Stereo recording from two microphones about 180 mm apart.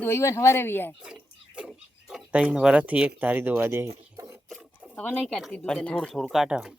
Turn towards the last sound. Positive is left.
turn(degrees=-5)  # may be behind; listen again after turning